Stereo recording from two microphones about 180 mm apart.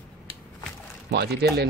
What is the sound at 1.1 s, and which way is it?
Speech, 65° right (ahead or behind).